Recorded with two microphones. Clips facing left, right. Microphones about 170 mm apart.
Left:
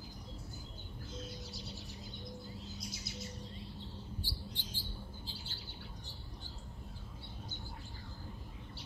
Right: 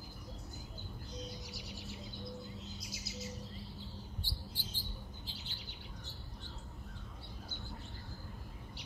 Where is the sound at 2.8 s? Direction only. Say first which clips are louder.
Right 1 dB; 10° right (ahead or behind).